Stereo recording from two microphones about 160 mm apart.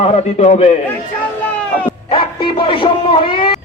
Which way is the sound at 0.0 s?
45° left (ahead or behind).